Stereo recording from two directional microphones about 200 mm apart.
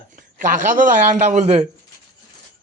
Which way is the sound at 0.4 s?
40° right (ahead or behind).